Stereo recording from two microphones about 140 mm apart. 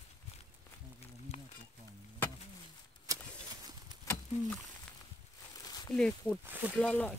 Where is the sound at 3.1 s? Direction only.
25° right (ahead or behind).